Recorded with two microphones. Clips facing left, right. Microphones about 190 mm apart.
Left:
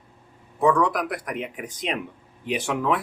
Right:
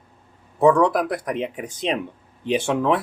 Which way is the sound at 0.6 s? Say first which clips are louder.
Right 5 dB; 30° right (ahead or behind).